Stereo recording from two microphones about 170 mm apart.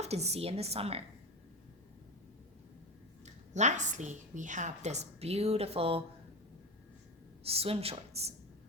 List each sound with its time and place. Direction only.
0.0 s a woman's voice: 40° right (ahead or behind)
3.2 s a woman's voice: 45° right (ahead or behind)
7.4 s a woman's voice: 35° right (ahead or behind)